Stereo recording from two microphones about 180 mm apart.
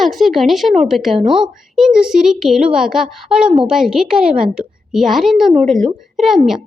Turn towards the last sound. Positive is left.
turn(degrees=0)  # may be behind; listen again after turning